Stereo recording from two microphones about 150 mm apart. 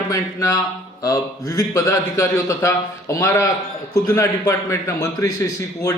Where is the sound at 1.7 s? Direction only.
20° left (ahead or behind).